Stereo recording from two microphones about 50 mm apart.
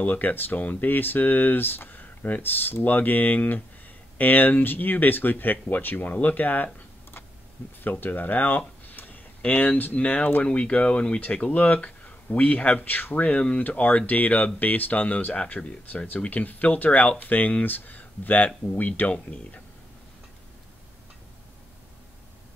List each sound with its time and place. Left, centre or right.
0.0 s speech: left
6.2 s computer keyboard: left
7.8 s speech: left
13.4 s speech: left
13.7 s speech: left